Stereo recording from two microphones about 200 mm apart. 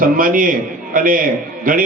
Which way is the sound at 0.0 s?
45° right (ahead or behind).